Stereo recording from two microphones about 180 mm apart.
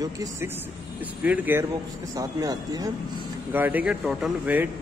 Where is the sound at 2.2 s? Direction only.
20° right (ahead or behind).